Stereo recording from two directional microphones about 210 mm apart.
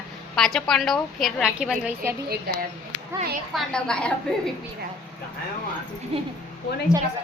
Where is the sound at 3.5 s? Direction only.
5° left (ahead or behind).